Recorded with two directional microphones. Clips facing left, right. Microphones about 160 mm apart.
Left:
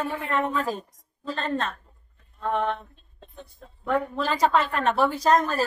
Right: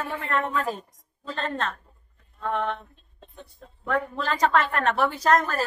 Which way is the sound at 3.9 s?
10° left (ahead or behind).